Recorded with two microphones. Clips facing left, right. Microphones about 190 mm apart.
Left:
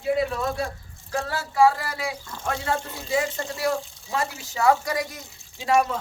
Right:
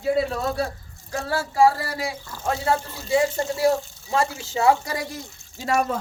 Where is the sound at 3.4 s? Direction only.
35° right (ahead or behind).